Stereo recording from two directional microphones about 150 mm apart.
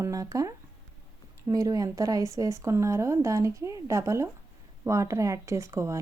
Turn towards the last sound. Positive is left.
turn(degrees=-20)  # may be behind; listen again after turning